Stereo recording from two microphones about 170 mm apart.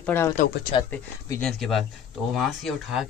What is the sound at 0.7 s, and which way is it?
Speech, 30° left (ahead or behind).